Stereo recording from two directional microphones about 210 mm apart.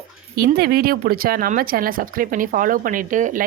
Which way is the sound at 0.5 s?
45° right (ahead or behind).